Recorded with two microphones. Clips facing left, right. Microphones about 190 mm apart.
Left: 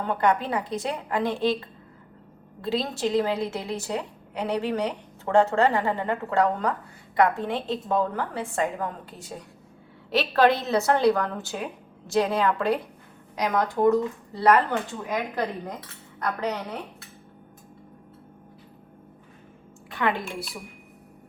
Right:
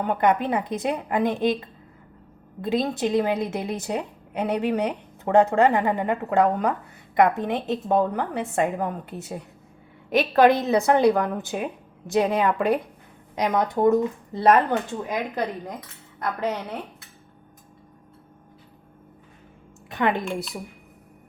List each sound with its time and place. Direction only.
0.0 s a woman's voice: 15° right (ahead or behind)
2.6 s a woman's voice: 20° right (ahead or behind)
10.1 s a woman's voice: 15° right (ahead or behind)
19.9 s a woman's voice: 20° right (ahead or behind)